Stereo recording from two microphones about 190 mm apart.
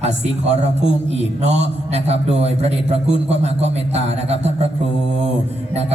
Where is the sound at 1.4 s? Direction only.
35° right (ahead or behind).